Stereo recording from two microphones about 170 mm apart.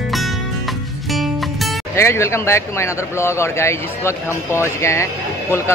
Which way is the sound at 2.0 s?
15° left (ahead or behind).